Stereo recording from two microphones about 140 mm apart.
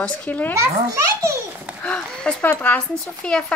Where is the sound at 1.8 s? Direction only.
5° left (ahead or behind).